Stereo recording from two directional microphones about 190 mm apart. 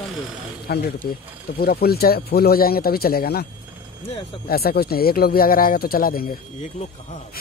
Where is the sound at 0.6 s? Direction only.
55° left (ahead or behind).